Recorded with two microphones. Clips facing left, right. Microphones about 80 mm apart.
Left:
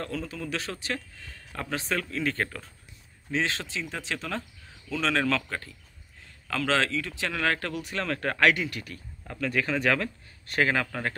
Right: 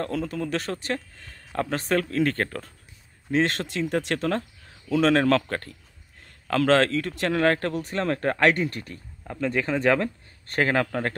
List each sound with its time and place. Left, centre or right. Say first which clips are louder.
0.0 s speech: right 6 dB; right
4.8 s speech: right 7 dB; right
9.3 s speech: right 3 dB; right